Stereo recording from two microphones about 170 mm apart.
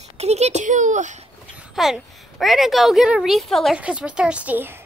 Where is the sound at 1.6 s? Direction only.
5° right (ahead or behind).